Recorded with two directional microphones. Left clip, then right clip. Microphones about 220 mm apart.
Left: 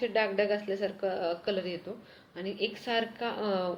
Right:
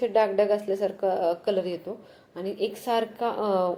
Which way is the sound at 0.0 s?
25° right (ahead or behind).